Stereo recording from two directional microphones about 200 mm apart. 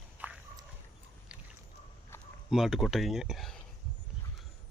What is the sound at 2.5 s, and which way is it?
Speech, centre (ahead or behind).